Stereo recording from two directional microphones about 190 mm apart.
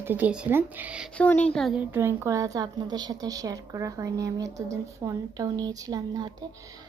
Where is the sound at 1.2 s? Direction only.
10° left (ahead or behind); by 6.4 s 20° right (ahead or behind).